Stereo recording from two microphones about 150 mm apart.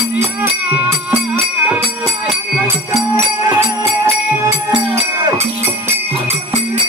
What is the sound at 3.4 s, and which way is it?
Music, 20° right (ahead or behind).